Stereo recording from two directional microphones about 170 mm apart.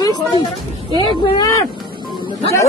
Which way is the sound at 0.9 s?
20° left (ahead or behind).